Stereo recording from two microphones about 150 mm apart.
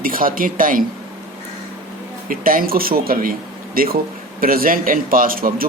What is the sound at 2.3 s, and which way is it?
A man's voice, 70° right (ahead or behind).